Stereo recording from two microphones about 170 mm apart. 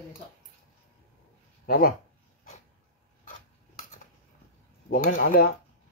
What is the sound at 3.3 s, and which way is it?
Filing, 50° left (ahead or behind).